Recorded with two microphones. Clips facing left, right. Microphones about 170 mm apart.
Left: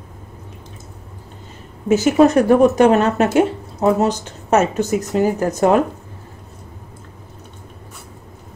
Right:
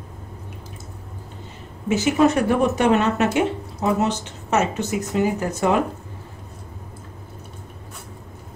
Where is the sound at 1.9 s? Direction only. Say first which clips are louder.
Left 5 dB; 40° left (ahead or behind).